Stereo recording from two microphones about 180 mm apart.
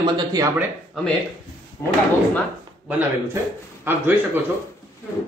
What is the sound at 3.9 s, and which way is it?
Speech, 10° right (ahead or behind).